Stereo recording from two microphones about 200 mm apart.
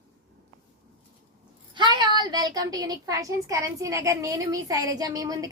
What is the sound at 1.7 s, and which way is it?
A child's voice, 20° right (ahead or behind).